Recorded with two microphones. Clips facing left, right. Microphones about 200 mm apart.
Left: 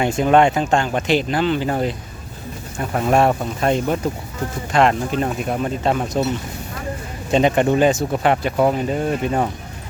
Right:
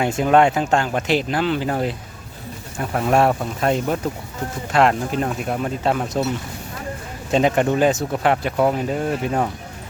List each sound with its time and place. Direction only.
0.2 s speech: centre (ahead or behind)
7.3 s speech: centre (ahead or behind)